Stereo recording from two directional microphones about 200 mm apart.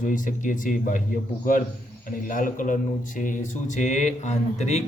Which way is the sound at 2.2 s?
40° left (ahead or behind).